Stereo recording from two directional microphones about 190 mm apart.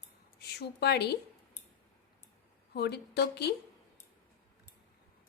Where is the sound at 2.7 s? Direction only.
60° left (ahead or behind).